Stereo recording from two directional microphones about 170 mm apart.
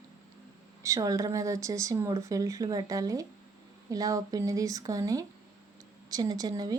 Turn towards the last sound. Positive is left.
turn(degrees=-20)  # may be behind; listen again after turning